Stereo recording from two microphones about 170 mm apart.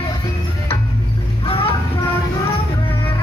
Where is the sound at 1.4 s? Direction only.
35° left (ahead or behind).